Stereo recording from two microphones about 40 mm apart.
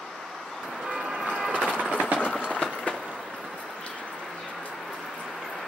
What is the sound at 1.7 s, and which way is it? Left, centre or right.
Train, right.